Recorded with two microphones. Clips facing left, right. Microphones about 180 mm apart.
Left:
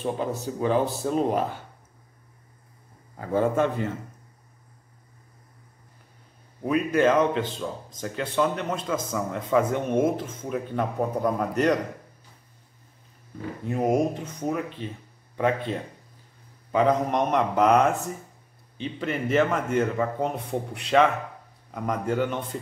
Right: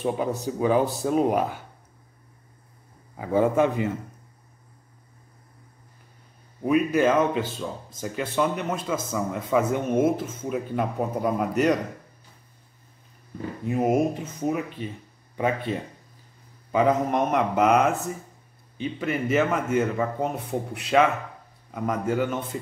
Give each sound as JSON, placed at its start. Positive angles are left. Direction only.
{"t": 0.0, "sound": "speech", "side_deg": -15}
{"t": 3.2, "sound": "speech", "side_deg": -10}
{"t": 6.6, "sound": "speech", "side_deg": -5}
{"t": 13.7, "sound": "a man's voice", "side_deg": -5}